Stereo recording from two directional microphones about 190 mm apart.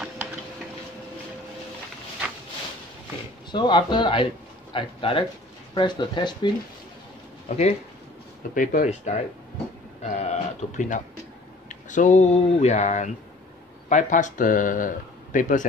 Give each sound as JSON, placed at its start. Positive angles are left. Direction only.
{"t": 3.5, "sound": "speech", "side_deg": 25}
{"t": 7.4, "sound": "speech", "side_deg": 35}